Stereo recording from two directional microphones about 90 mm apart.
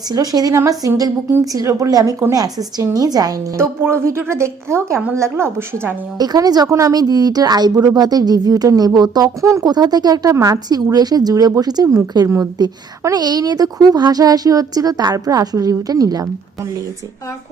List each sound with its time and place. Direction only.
0.1 s a woman's voice: 45° right (ahead or behind)
3.6 s a woman's voice: 30° right (ahead or behind)
6.1 s speech: 45° right (ahead or behind)
9.6 s a woman's voice: 50° right (ahead or behind)